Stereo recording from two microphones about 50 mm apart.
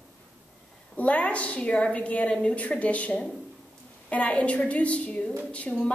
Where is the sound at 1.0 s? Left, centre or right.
Left.